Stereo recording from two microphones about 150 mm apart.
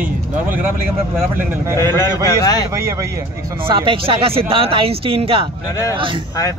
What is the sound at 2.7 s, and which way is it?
Speech, 20° right (ahead or behind).